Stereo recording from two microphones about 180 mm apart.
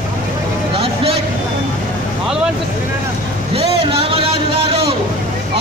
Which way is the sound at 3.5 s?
30° right (ahead or behind).